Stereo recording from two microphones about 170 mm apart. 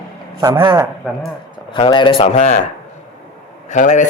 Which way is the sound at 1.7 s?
30° left (ahead or behind).